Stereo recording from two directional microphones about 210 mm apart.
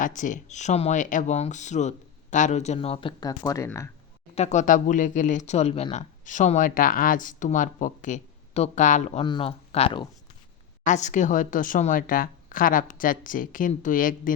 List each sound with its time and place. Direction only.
0.0 s speech: 35° left (ahead or behind); by 3.8 s 15° left (ahead or behind)
4.4 s speech: 35° left (ahead or behind)
9.2 s speech: 25° left (ahead or behind); by 14.3 s 40° left (ahead or behind)